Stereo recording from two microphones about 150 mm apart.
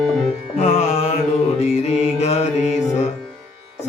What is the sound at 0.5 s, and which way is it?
Music, 50° left (ahead or behind).